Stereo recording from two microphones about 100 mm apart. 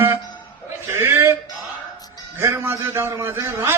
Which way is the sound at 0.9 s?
25° right (ahead or behind).